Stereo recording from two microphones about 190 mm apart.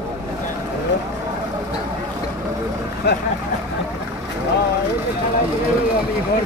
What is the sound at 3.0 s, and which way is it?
Speech, 60° left (ahead or behind).